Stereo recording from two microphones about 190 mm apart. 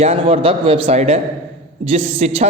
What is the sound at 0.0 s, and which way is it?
A man's voice, 30° right (ahead or behind).